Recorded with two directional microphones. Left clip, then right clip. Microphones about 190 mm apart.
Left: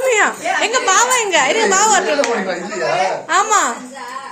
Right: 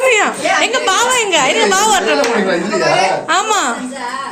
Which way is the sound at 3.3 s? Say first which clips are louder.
Even; 10° left (ahead or behind).